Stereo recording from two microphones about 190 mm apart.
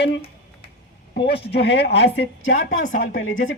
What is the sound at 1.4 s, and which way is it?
A woman's voice, 60° left (ahead or behind).